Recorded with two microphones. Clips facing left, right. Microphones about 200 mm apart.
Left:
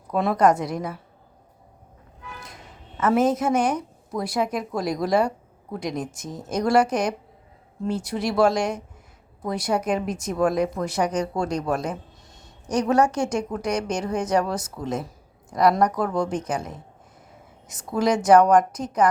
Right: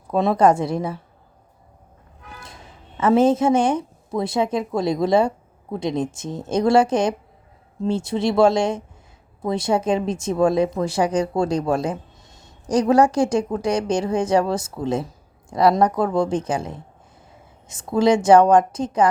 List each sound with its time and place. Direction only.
0.1 s speech: 25° right (ahead or behind)
3.0 s speech: 30° right (ahead or behind)